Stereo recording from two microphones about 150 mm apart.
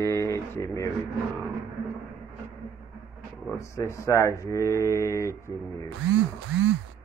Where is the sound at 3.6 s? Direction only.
20° left (ahead or behind).